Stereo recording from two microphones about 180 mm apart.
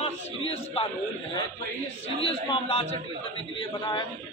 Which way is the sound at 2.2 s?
30° left (ahead or behind).